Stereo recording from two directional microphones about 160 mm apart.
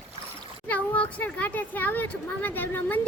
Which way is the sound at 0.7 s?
10° left (ahead or behind).